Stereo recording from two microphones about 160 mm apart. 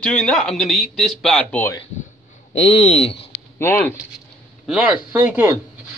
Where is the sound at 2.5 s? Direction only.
40° left (ahead or behind).